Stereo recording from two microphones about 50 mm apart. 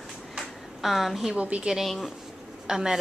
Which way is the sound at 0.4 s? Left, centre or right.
Centre.